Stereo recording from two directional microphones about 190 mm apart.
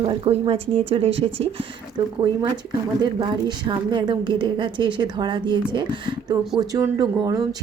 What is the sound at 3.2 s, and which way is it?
A woman's voice, 25° right (ahead or behind).